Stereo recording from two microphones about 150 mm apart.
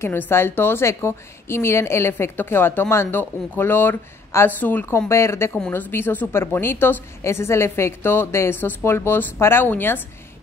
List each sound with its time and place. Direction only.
0.0 s speech: 15° left (ahead or behind)